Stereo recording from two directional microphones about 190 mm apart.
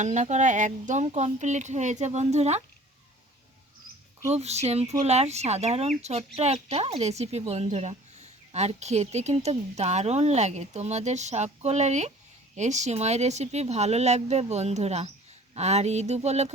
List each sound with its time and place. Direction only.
0.0 s speech: 40° right (ahead or behind)
4.4 s speech: 35° right (ahead or behind)